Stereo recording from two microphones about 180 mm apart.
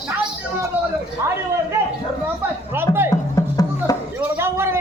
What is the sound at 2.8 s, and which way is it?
Music, 10° right (ahead or behind).